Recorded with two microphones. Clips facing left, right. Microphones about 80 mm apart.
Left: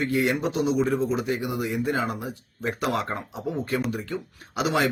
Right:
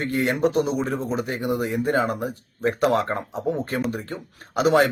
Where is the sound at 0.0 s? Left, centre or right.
Right.